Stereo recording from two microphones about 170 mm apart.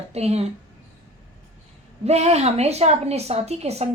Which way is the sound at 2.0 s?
40° right (ahead or behind).